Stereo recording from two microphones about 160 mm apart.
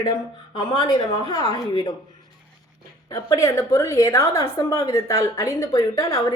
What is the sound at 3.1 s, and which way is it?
A woman's voice, 20° left (ahead or behind).